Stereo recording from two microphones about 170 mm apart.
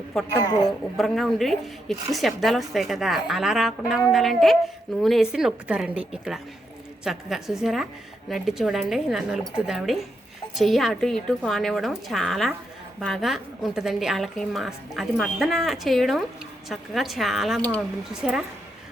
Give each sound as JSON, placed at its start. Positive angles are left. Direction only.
{"t": 0.4, "sound": "a woman's voice", "side_deg": 25}
{"t": 0.9, "sound": "a woman's voice", "side_deg": 0}